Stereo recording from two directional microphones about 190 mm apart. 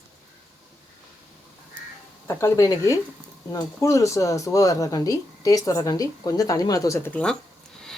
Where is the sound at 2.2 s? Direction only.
15° left (ahead or behind).